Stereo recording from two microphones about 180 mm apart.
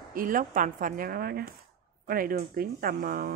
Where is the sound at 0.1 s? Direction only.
50° right (ahead or behind).